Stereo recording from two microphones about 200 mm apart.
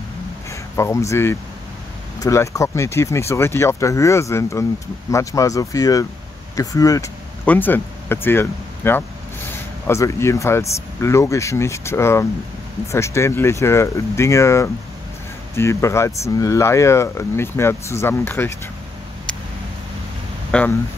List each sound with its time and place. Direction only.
0.5 s speech: 15° left (ahead or behind)
20.5 s speech: 5° left (ahead or behind)